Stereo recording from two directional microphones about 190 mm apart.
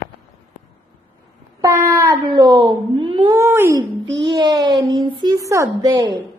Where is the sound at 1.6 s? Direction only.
10° right (ahead or behind).